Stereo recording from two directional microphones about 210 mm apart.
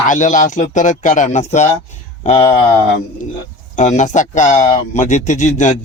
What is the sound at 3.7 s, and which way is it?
Speech, 35° left (ahead or behind).